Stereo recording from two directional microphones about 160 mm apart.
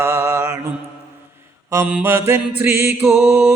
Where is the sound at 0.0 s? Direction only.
15° right (ahead or behind).